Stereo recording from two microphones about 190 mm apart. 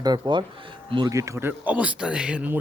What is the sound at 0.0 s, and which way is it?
Speech, 25° right (ahead or behind).